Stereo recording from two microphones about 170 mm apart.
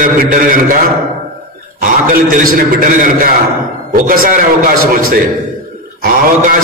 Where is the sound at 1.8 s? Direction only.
55° right (ahead or behind).